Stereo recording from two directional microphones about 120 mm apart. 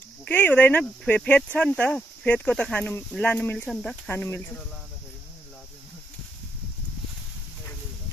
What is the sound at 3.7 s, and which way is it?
Speech, 5° left (ahead or behind).